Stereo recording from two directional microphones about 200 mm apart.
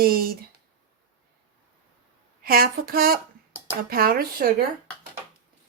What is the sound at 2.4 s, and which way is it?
Speech, 50° right (ahead or behind).